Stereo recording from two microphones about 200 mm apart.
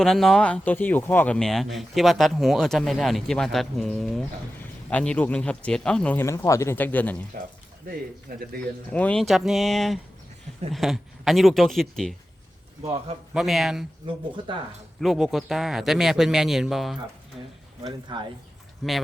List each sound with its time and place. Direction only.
0.0 s speech: centre (ahead or behind)
8.3 s speech: 45° right (ahead or behind)
8.9 s speech: 5° left (ahead or behind)
13.3 s speech: centre (ahead or behind)
15.0 s speech: centre (ahead or behind)
18.1 s speech: 25° right (ahead or behind)
18.8 s speech: centre (ahead or behind)